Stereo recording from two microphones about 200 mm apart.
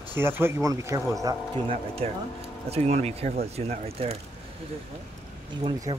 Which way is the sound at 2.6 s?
30° right (ahead or behind).